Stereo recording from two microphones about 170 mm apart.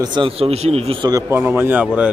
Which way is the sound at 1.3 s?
10° right (ahead or behind).